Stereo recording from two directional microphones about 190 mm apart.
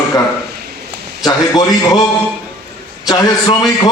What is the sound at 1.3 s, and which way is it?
Speech, 20° left (ahead or behind).